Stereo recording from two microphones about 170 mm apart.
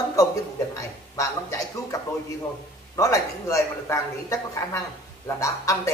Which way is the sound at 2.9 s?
20° left (ahead or behind).